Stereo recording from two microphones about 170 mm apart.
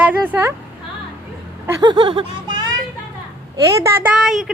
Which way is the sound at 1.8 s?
25° right (ahead or behind).